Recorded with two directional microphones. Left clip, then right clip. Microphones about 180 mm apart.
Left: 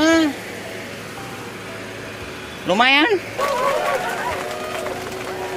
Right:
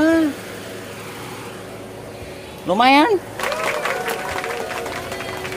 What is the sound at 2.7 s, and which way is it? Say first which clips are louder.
Speech: right 1 dB; 10° right (ahead or behind).